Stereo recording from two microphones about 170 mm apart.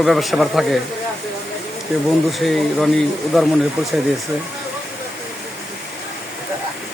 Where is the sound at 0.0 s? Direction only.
Centre (ahead or behind).